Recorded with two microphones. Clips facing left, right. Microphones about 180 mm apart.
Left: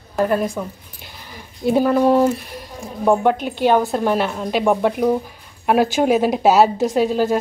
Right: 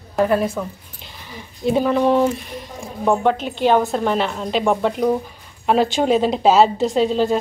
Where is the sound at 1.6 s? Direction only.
5° left (ahead or behind).